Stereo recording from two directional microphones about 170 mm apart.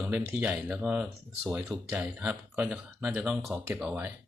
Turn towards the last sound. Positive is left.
turn(degrees=-10)  # may be behind; listen again after turning